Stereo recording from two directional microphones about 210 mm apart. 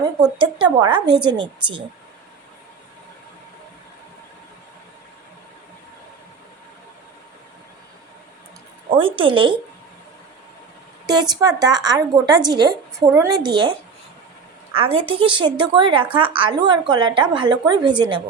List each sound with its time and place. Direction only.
0.0 s a woman's voice: 20° right (ahead or behind)
8.9 s a woman's voice: 25° right (ahead or behind)
11.1 s a woman's voice: 20° right (ahead or behind)